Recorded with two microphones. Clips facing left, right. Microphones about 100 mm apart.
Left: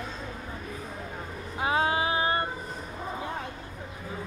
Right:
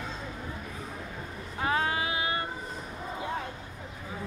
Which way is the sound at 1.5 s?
20° left (ahead or behind).